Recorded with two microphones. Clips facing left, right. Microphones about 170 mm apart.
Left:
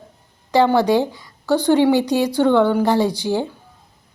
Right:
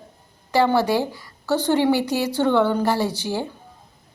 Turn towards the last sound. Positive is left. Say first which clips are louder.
# left 5 dB
turn(degrees=15)  # may be behind; listen again after turning